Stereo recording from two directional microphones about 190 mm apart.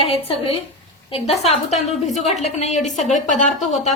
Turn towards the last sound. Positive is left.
turn(degrees=40)  # may be behind; listen again after turning